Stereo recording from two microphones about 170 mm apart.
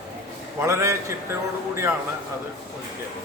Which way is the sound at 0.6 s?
15° right (ahead or behind).